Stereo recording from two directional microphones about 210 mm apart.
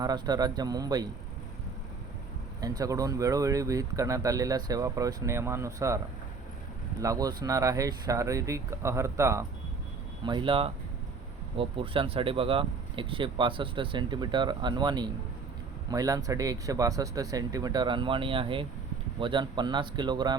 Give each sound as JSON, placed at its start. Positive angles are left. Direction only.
{"t": 0.0, "sound": "speech", "side_deg": -20}
{"t": 2.6, "sound": "speech", "side_deg": -15}
{"t": 7.0, "sound": "speech", "side_deg": -15}